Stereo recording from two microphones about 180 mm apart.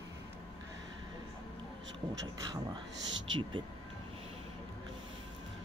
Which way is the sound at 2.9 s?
90° right.